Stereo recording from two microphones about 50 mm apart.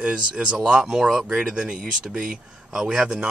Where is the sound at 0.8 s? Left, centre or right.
Centre.